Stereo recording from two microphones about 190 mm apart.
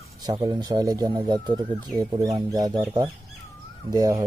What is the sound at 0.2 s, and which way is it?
Speech, 20° right (ahead or behind).